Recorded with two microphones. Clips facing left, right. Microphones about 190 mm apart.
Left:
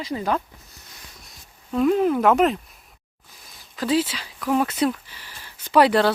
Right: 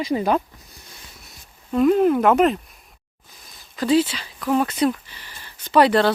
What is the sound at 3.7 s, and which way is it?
Speech, 5° left (ahead or behind).